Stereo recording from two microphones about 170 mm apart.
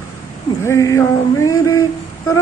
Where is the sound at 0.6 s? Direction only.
20° left (ahead or behind).